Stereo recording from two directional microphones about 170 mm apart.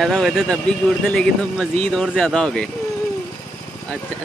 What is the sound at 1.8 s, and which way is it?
Speech, centre (ahead or behind).